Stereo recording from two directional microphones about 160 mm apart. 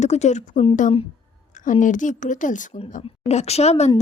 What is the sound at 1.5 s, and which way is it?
A woman's voice, 55° left (ahead or behind).